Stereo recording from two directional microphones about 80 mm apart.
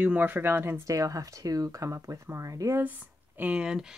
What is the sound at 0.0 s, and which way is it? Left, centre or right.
Speech, right.